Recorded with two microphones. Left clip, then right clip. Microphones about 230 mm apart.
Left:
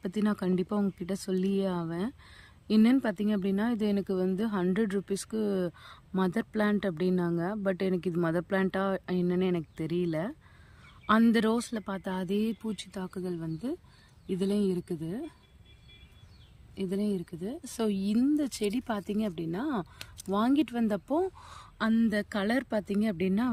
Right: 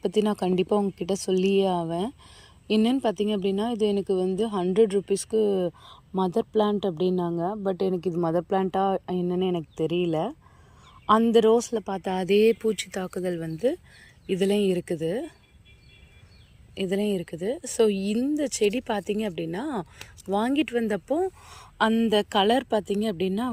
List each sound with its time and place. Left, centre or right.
0.2 s speech: centre
7.0 s speech: left
7.7 s speech: centre
9.8 s speech: left
10.1 s speech: centre
12.3 s speech: right
12.6 s speech: centre
16.7 s speech: centre